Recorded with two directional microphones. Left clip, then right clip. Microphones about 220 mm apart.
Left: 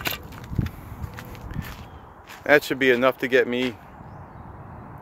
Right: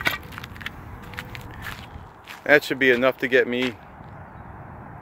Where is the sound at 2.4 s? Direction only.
Centre (ahead or behind).